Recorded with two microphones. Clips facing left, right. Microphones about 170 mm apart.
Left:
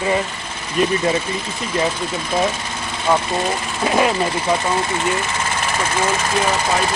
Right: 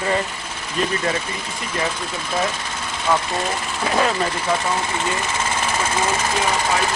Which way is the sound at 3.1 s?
15° left (ahead or behind).